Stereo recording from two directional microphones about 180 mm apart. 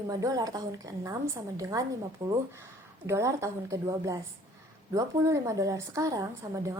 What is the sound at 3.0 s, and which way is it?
A woman's voice, 15° right (ahead or behind).